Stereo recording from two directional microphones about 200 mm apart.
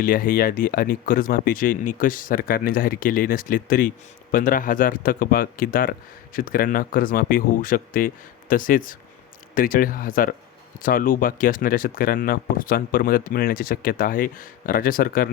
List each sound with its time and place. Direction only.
0.0 s speech: 45° left (ahead or behind)